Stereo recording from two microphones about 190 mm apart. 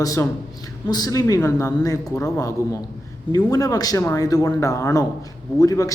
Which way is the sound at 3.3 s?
20° left (ahead or behind).